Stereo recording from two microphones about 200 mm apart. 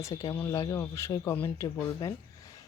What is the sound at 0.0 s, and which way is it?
Speech, 15° left (ahead or behind).